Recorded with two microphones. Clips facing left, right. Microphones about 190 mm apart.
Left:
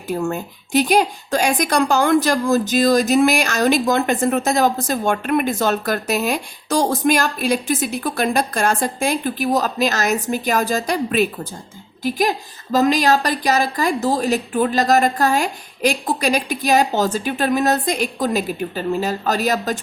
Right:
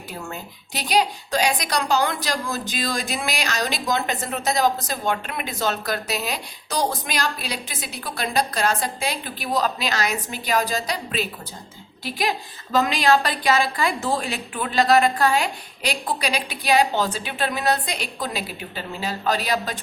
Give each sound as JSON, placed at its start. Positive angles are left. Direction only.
{"t": 0.3, "sound": "a woman's voice", "side_deg": 50}